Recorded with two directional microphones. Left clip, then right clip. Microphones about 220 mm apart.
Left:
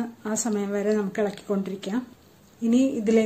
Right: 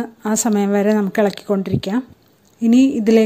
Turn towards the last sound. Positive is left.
turn(degrees=-40)  # may be behind; listen again after turning